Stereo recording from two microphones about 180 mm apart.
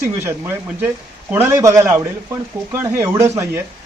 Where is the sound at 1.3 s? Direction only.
15° right (ahead or behind).